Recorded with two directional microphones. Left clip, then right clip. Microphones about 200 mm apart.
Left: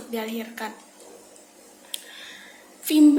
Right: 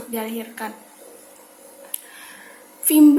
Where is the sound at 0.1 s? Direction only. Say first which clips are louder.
Right 1 dB; 20° right (ahead or behind).